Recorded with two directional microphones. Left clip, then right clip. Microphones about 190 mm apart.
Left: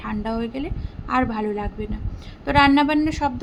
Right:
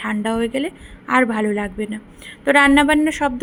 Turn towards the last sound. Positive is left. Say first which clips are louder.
# right 4 dB
turn(degrees=-20)  # may be behind; listen again after turning